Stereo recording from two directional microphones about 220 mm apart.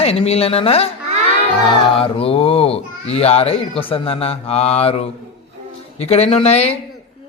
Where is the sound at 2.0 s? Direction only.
25° left (ahead or behind).